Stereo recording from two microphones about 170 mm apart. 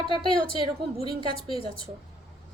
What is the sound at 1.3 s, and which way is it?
Speech, 35° left (ahead or behind).